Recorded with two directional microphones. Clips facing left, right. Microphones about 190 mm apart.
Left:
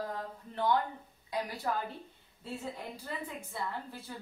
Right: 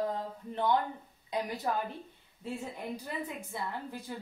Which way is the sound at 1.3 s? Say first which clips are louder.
Right 2 dB; 20° right (ahead or behind).